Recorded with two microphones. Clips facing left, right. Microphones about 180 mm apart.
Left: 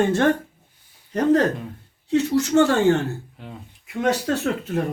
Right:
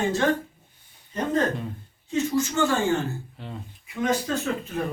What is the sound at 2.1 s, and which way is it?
Speech, 70° left (ahead or behind).